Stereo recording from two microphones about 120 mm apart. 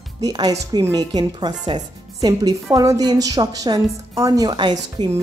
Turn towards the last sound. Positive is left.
turn(degrees=-40)  # may be behind; listen again after turning